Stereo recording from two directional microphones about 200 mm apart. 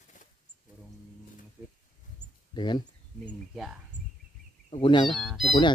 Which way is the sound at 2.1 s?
20° left (ahead or behind).